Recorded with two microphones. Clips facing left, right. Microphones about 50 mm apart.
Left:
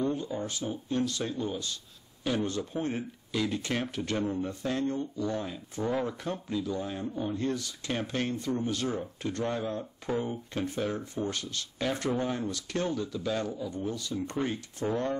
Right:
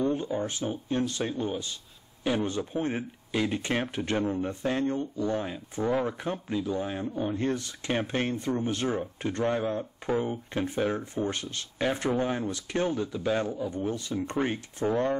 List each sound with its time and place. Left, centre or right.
0.0 s speech: right